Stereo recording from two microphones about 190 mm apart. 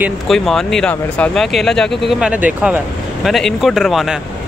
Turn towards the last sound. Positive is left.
turn(degrees=0)  # may be behind; listen again after turning